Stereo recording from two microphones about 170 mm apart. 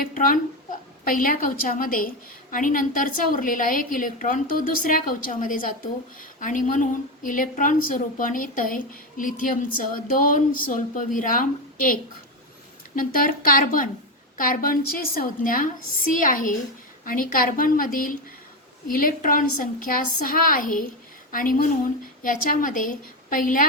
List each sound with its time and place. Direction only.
0.0 s a woman's voice: 55° left (ahead or behind)
13.0 s a woman's voice: 55° left (ahead or behind)